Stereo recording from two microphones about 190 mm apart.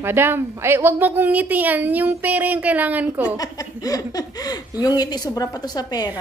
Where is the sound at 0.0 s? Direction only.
10° right (ahead or behind).